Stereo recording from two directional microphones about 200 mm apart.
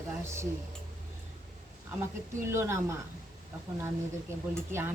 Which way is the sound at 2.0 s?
15° right (ahead or behind).